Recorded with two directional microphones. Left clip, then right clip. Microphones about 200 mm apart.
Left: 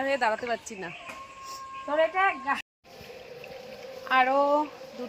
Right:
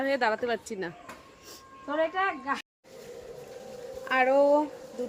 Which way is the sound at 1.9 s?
45° left (ahead or behind).